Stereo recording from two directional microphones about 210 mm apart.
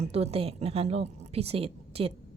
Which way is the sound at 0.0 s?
30° right (ahead or behind).